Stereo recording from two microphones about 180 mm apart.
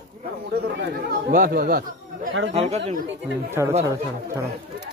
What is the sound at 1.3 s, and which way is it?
Speech, 50° right (ahead or behind).